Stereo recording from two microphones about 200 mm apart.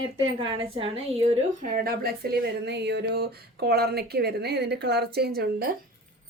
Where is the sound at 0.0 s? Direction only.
25° right (ahead or behind); by 5.7 s 50° right (ahead or behind).